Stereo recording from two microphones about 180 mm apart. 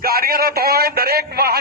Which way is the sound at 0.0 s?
55° right (ahead or behind).